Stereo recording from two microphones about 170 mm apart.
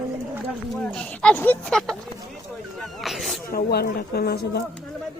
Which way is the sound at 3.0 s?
Centre (ahead or behind).